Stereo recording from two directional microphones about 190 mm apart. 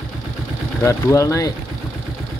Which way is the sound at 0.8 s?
15° left (ahead or behind).